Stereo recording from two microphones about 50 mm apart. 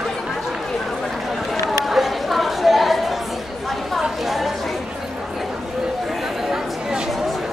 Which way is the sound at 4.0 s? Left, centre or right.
Centre.